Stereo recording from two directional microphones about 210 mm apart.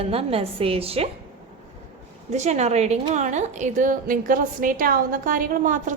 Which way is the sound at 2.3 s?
30° right (ahead or behind).